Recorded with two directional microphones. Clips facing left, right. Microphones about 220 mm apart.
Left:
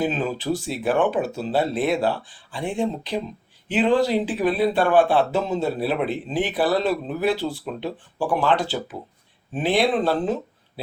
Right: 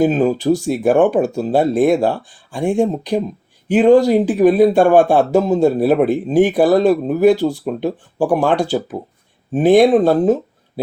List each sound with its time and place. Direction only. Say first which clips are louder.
0.0 s speech: right 10 dB; 45° right (ahead or behind)